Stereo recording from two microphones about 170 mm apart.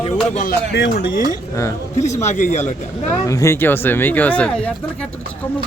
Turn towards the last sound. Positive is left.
turn(degrees=5)  # may be behind; listen again after turning